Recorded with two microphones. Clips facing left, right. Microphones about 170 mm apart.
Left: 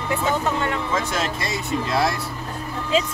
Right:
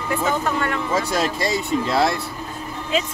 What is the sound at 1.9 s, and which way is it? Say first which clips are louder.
Speech: right 2 dB; 25° right (ahead or behind).